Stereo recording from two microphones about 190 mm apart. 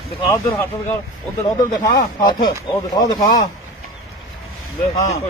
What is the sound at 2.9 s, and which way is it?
Speech, 20° left (ahead or behind).